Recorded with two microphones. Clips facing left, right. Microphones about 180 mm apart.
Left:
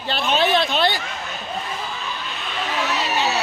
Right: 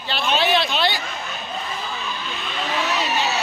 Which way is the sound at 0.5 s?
50° left (ahead or behind).